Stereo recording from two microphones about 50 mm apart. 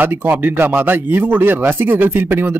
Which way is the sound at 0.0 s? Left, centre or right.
Right.